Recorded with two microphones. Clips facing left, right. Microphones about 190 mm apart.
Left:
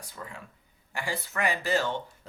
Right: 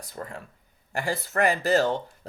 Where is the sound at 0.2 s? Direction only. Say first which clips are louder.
Right 6 dB; 50° right (ahead or behind).